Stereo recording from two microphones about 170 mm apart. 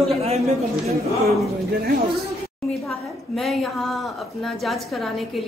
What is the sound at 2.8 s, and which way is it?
A woman's voice, centre (ahead or behind).